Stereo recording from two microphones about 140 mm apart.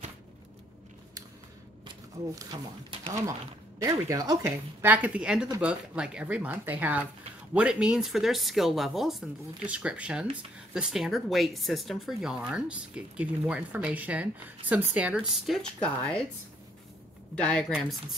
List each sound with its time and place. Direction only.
1.9 s a woman's voice: 30° right (ahead or behind); by 15.5 s 10° right (ahead or behind)
15.5 s speech: 5° left (ahead or behind)
17.4 s speech: 10° left (ahead or behind)